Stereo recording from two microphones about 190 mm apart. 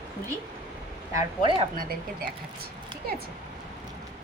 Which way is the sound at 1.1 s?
25° right (ahead or behind).